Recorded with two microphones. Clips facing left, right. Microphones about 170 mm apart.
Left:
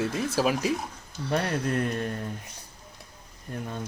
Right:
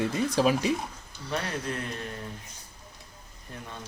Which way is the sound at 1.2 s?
55° left (ahead or behind).